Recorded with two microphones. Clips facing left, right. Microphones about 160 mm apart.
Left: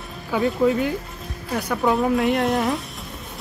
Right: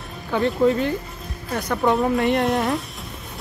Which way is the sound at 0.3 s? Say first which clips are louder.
Right 1 dB; 5° left (ahead or behind).